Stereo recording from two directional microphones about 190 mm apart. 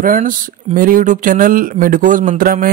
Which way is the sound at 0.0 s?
45° right (ahead or behind).